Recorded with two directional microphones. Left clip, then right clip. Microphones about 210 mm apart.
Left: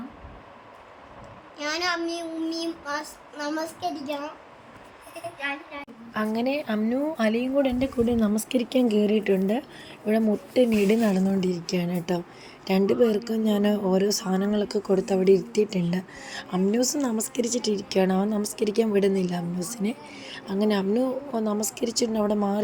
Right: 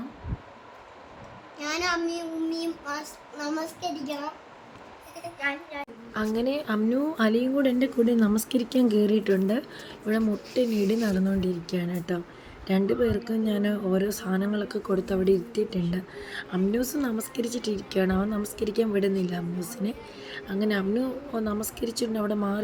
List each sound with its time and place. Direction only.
1.5 s child singing: 25° left (ahead or behind)
6.1 s a woman's voice: 5° left (ahead or behind)